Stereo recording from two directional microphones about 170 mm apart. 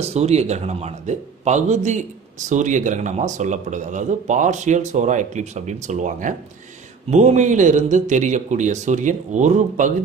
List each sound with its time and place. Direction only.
0.0 s a man's voice: 40° right (ahead or behind)